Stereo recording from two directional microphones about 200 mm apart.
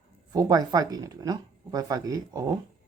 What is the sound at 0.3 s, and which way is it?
Speech, 20° right (ahead or behind).